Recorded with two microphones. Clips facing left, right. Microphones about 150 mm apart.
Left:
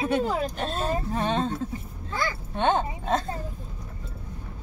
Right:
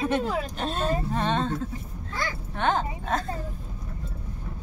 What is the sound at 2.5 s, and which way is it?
Speech, 20° left (ahead or behind).